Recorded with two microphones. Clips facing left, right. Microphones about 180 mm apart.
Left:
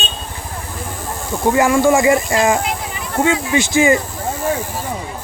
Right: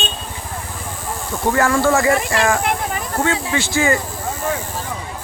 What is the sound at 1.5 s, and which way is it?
Speech, 15° left (ahead or behind).